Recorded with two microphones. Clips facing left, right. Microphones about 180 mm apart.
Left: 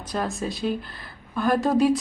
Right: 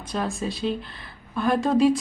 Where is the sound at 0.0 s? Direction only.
Centre (ahead or behind).